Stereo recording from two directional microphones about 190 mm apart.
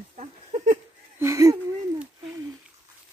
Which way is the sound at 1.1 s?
15° right (ahead or behind).